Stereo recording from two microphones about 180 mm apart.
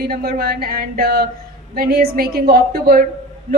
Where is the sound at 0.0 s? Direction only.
55° right (ahead or behind).